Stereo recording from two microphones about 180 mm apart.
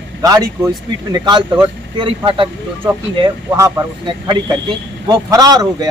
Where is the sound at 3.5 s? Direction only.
20° right (ahead or behind).